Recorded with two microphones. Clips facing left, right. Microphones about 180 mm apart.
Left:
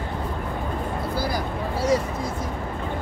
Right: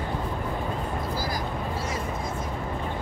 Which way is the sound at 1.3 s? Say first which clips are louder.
Left 3 dB; 75° left (ahead or behind).